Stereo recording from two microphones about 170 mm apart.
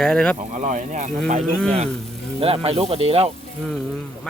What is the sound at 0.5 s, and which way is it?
Speech, 50° right (ahead or behind).